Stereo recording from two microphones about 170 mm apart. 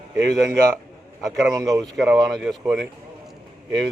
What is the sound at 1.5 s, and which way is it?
Speech, 20° right (ahead or behind).